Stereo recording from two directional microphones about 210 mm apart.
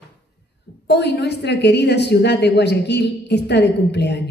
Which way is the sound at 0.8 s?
55° left (ahead or behind).